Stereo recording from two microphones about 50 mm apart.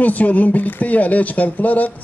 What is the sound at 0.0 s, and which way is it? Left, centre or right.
Speech, left.